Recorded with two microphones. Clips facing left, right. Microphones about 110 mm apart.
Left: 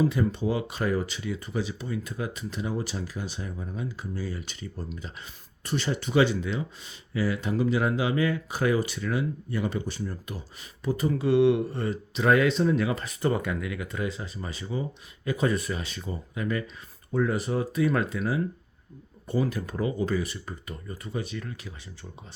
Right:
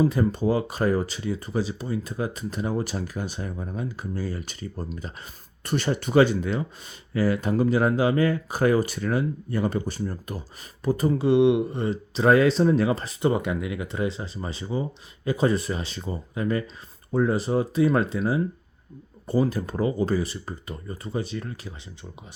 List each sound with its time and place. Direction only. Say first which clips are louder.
0.0 s speech: right 3 dB; 40° right (ahead or behind)
11.1 s speech: right 2 dB; 25° right (ahead or behind)
13.2 s speech: right 3 dB; 20° right (ahead or behind); by 21.7 s 35° right (ahead or behind)